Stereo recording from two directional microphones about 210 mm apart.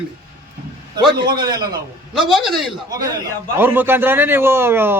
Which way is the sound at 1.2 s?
20° right (ahead or behind).